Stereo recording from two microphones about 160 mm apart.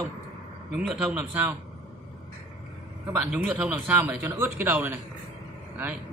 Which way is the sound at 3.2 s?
5° right (ahead or behind).